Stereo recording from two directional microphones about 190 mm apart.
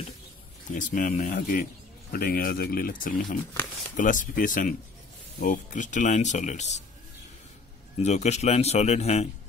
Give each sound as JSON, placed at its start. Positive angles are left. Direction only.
{"t": 0.7, "sound": "speech", "side_deg": 45}
{"t": 8.0, "sound": "speech", "side_deg": 35}